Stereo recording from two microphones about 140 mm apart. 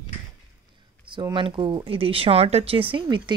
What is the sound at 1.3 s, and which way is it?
Speech, 35° right (ahead or behind).